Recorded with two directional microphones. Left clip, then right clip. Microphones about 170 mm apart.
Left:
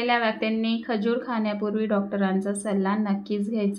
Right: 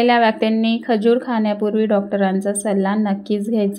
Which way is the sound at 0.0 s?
45° right (ahead or behind).